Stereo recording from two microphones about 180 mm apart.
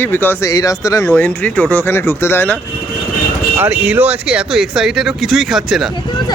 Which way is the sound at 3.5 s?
10° right (ahead or behind).